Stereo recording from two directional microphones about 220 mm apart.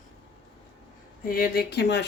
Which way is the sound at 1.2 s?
40° left (ahead or behind).